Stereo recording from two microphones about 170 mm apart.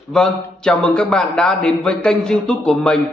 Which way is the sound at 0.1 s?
5° left (ahead or behind).